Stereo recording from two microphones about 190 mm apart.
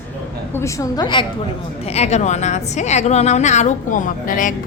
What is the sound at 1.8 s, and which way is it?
A woman's voice, 35° left (ahead or behind).